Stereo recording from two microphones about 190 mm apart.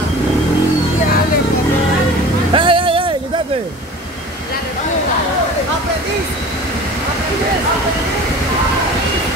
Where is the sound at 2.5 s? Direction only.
25° right (ahead or behind).